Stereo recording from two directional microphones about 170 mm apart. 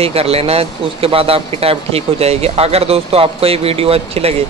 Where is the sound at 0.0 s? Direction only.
35° right (ahead or behind).